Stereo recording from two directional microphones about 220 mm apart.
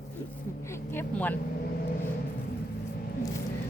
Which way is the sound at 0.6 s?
10° left (ahead or behind).